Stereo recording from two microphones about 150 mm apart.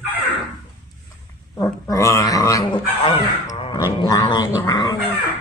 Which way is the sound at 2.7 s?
30° left (ahead or behind).